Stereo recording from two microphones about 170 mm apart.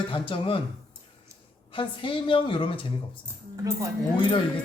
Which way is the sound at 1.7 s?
30° left (ahead or behind).